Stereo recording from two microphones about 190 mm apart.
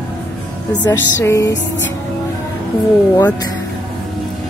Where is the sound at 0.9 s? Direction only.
15° left (ahead or behind).